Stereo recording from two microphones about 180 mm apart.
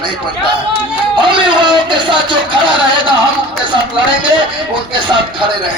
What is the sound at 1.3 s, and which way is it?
Speech, 25° right (ahead or behind).